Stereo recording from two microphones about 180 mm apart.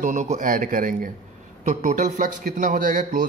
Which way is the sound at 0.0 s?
45° right (ahead or behind).